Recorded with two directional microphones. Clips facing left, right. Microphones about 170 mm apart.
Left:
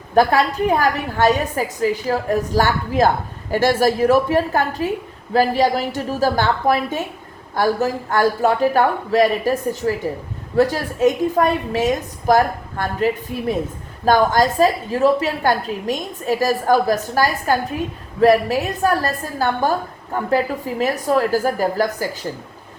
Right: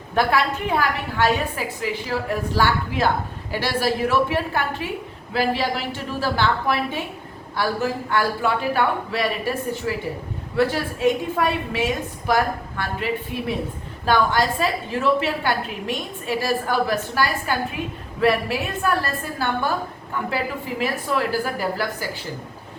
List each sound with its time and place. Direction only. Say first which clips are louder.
0.1 s a woman's voice: left 5 dB; 40° left (ahead or behind)